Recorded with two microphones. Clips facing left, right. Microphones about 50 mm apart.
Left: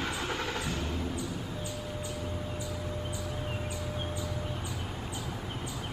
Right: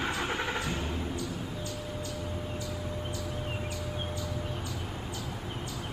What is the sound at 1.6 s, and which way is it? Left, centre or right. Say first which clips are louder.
Music: even; centre.